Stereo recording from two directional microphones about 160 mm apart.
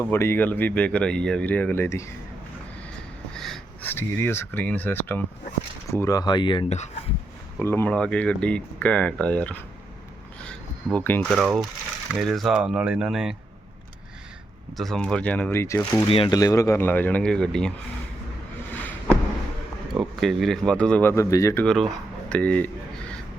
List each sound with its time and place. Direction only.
0.0 s speech: 15° left (ahead or behind)
3.3 s a sound: centre (ahead or behind)
3.8 s speech: 15° left (ahead or behind)
6.7 s speech: 45° left (ahead or behind)
7.6 s speech: 15° left (ahead or behind)
10.4 s a sound: 5° left (ahead or behind)
11.3 s speech: centre (ahead or behind)
14.8 s speech: 5° left (ahead or behind); by 16.0 s 20° left (ahead or behind)
16.0 s speech: 35° left (ahead or behind)
16.3 s speech: 20° left (ahead or behind); by 17.7 s 5° left (ahead or behind)
19.9 s speech: centre (ahead or behind); by 21.6 s 20° left (ahead or behind)
21.6 s speech: 5° left (ahead or behind)